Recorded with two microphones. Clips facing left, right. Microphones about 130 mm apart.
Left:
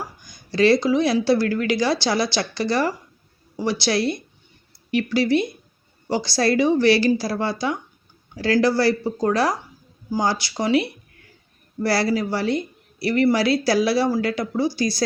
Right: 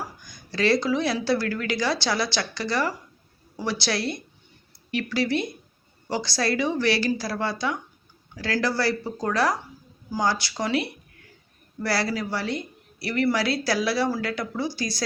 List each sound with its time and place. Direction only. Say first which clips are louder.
0.5 s speech: left 5 dB; 20° left (ahead or behind)
5.0 s speech: left 5 dB; 20° left (ahead or behind)